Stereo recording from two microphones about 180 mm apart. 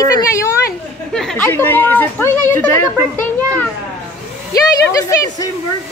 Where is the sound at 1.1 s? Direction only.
5° left (ahead or behind).